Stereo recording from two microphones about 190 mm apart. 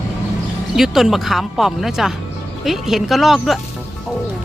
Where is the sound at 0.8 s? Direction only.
Centre (ahead or behind).